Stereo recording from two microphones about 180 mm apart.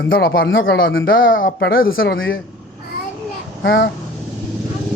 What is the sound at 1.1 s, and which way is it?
Speech, 50° left (ahead or behind).